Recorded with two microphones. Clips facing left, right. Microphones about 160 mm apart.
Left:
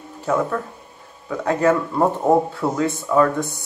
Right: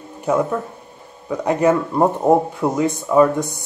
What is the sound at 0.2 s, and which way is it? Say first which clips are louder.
Speech: right 2 dB; 15° right (ahead or behind).